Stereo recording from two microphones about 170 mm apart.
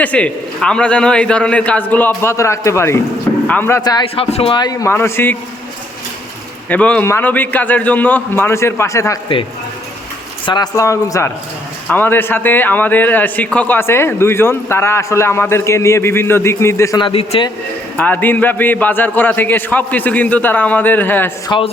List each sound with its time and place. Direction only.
0.0 s a man's voice: 5° left (ahead or behind)
4.1 s a man's voice: 35° left (ahead or behind); by 5.4 s 15° left (ahead or behind)
6.7 s a man's voice: 5° left (ahead or behind)
10.4 s a man's voice: 25° left (ahead or behind)
17.0 s a man's voice: 35° left (ahead or behind)
17.9 s a man's voice: 10° left (ahead or behind)